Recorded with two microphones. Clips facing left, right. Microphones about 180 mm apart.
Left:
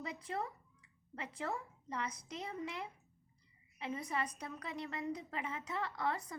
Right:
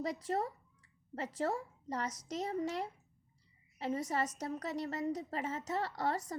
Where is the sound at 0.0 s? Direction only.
40° right (ahead or behind).